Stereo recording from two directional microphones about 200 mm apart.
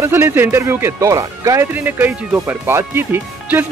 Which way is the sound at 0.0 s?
10° right (ahead or behind).